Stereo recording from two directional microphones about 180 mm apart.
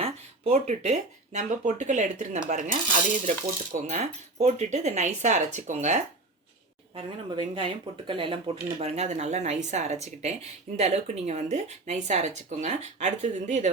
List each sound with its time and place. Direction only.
0.0 s speech: 35° right (ahead or behind)
6.9 s speech: 30° right (ahead or behind)